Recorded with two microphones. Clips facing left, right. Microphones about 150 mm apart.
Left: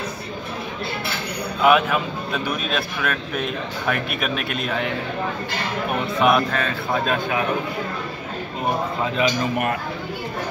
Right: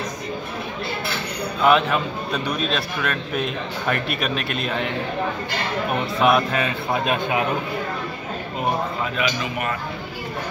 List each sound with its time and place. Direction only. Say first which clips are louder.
1.6 s a man's voice: left 1 dB; 5° left (ahead or behind)
6.2 s a man's voice: even; 5° right (ahead or behind)
9.4 s a man's voice: left 4 dB; 55° left (ahead or behind)